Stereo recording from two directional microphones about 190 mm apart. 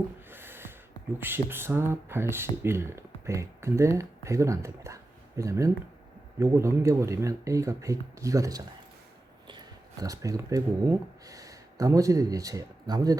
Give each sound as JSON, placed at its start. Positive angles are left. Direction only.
{"t": 0.3, "sound": "gasp", "side_deg": -10}
{"t": 1.2, "sound": "speech", "side_deg": -10}
{"t": 10.0, "sound": "speech", "side_deg": -20}